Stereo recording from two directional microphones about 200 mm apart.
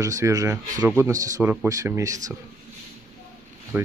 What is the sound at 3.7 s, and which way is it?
Speech, 10° right (ahead or behind).